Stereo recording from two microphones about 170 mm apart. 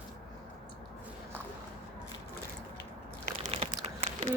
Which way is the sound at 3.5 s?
35° right (ahead or behind).